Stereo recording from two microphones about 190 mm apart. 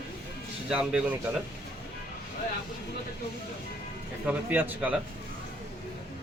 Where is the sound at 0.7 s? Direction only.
5° right (ahead or behind).